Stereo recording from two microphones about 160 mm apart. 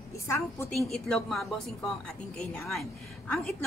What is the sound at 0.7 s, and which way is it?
Speech, 5° left (ahead or behind).